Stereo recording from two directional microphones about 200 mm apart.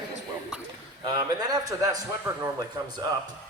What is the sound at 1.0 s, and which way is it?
Speech, 20° right (ahead or behind).